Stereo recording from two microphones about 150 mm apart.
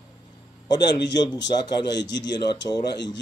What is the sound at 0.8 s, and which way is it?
A man's voice, 25° left (ahead or behind).